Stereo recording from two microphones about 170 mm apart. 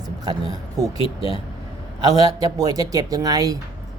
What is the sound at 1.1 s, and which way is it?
Speech, 35° left (ahead or behind).